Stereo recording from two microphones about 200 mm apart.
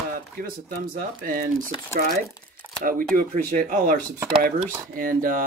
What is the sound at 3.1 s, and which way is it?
Speech, 45° right (ahead or behind).